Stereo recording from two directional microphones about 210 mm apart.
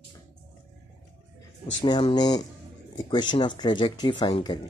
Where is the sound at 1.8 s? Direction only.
25° left (ahead or behind).